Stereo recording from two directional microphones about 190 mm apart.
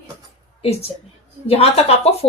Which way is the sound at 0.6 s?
30° left (ahead or behind).